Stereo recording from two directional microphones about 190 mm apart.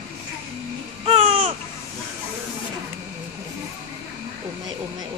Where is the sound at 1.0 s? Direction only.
30° right (ahead or behind).